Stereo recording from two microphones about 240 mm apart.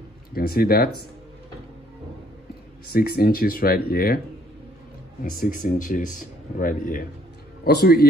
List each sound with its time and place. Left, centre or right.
0.3 s speech: left
2.9 s speech: left
5.4 s speech: left